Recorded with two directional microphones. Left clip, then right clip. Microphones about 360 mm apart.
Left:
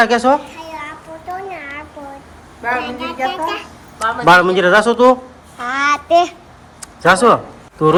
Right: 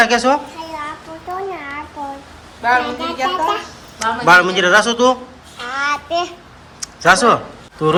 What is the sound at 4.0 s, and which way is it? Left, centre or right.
Speech, centre.